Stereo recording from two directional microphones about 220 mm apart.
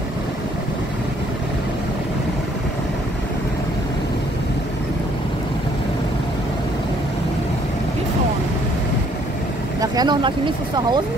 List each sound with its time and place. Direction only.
9.8 s speech: 20° right (ahead or behind)